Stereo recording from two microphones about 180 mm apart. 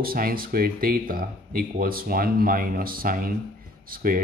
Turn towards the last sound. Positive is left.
turn(degrees=-50)  # may be behind; listen again after turning